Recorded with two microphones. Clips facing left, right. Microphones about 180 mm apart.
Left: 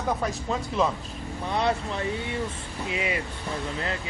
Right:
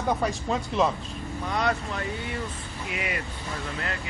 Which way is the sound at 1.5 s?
25° left (ahead or behind).